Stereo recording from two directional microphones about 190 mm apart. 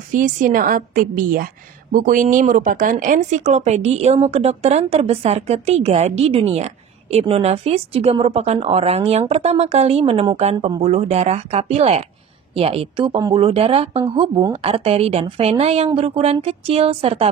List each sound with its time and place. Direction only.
0.1 s a woman's voice: 45° right (ahead or behind)